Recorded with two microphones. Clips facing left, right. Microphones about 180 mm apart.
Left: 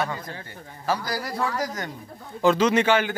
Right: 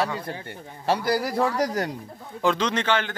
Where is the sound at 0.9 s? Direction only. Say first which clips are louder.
Right 4 dB; 25° right (ahead or behind).